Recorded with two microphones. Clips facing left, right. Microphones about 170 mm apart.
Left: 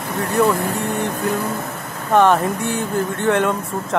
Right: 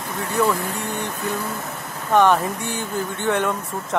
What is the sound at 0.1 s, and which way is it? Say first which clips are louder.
Vehicle: left 5 dB; 70° left (ahead or behind).